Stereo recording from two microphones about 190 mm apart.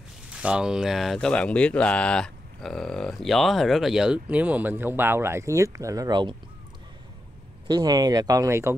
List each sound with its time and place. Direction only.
0.3 s speech: 5° right (ahead or behind); by 6.3 s 20° right (ahead or behind)
7.6 s speech: 20° right (ahead or behind)